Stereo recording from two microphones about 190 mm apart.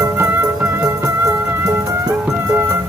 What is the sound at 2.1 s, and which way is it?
Music, 5° right (ahead or behind).